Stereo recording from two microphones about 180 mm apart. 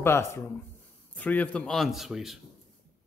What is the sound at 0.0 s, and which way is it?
Speech, 15° left (ahead or behind).